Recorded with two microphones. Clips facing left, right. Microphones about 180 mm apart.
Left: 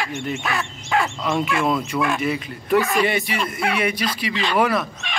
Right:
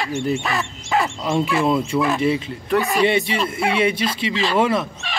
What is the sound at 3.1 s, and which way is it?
Speech, 25° right (ahead or behind).